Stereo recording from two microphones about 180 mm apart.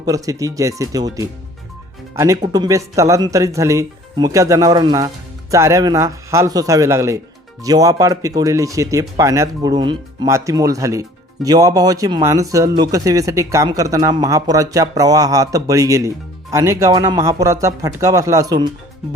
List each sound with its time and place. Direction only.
0.0 s speech: 20° right (ahead or behind)